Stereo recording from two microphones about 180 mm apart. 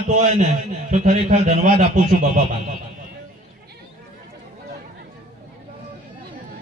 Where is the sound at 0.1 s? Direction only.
40° right (ahead or behind).